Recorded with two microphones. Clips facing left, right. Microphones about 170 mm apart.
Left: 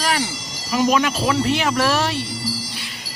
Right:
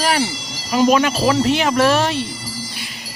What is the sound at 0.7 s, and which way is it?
Speech, 30° right (ahead or behind).